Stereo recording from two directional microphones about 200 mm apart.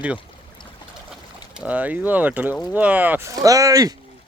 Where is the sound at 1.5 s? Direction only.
5° right (ahead or behind).